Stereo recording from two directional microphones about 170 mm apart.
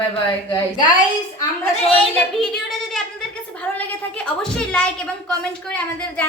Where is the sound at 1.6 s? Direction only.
5° left (ahead or behind).